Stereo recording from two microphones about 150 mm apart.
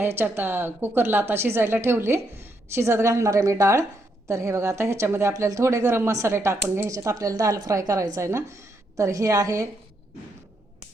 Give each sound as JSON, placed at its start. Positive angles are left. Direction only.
{"t": 0.0, "sound": "a woman's voice", "side_deg": -15}